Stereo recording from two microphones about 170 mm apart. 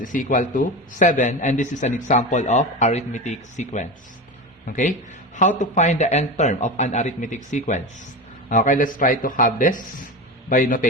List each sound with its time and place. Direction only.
0.0 s a man's voice: 50° left (ahead or behind)